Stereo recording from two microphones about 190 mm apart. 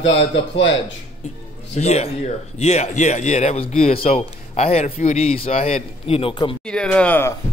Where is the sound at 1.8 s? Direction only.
35° left (ahead or behind).